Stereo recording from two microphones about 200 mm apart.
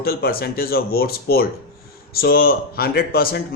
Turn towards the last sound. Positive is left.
turn(degrees=50)  # may be behind; listen again after turning